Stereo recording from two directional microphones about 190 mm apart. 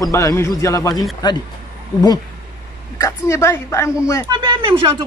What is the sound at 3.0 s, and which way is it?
A man's voice, 15° left (ahead or behind).